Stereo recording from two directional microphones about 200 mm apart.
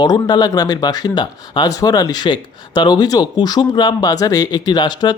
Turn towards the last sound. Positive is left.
turn(degrees=20)  # may be behind; listen again after turning